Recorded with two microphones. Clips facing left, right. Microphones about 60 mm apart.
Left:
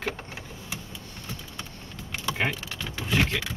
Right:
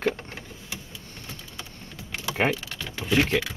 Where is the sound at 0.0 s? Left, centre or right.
Centre.